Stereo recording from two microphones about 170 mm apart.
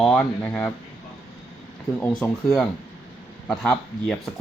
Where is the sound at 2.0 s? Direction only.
10° left (ahead or behind).